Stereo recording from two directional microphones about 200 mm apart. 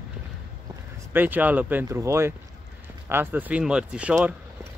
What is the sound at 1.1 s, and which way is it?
Speech, 10° right (ahead or behind).